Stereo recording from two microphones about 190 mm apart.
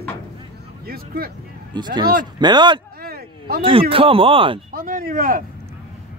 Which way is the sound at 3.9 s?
30° right (ahead or behind).